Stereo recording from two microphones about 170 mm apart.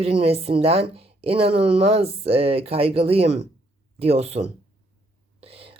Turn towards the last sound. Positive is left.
turn(degrees=-35)  # may be behind; listen again after turning